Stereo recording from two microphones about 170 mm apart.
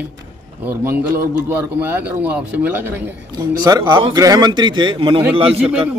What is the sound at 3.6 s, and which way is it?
A man's voice, 25° right (ahead or behind).